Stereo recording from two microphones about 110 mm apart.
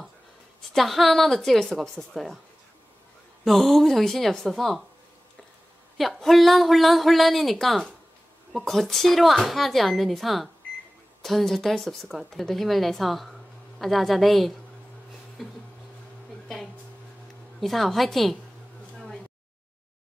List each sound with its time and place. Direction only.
0.7 s speech: centre (ahead or behind)
3.4 s speech: centre (ahead or behind)
5.9 s speech: centre (ahead or behind)
15.4 s a sound: centre (ahead or behind)
17.6 s speech: centre (ahead or behind)